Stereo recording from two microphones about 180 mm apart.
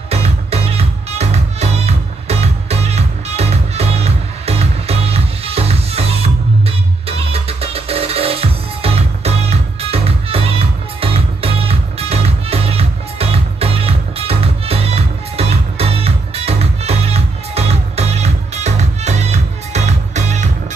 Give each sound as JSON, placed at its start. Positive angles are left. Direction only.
{"t": 0.1, "sound": "music", "side_deg": -35}